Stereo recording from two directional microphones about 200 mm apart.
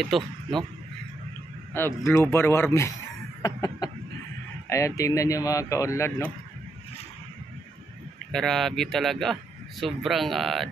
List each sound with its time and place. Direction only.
0.0 s speech: centre (ahead or behind)
1.7 s speech: 10° left (ahead or behind)
3.4 s chicken: 20° left (ahead or behind)
4.6 s speech: 15° left (ahead or behind)
8.3 s speech: centre (ahead or behind)